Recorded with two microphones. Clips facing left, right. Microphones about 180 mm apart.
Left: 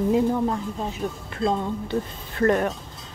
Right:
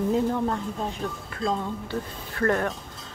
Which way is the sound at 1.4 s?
25° left (ahead or behind).